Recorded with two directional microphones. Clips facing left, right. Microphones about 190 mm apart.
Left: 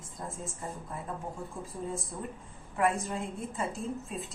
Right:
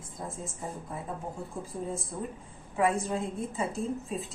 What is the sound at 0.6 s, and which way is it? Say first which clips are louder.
Speech: right 2 dB; 15° right (ahead or behind).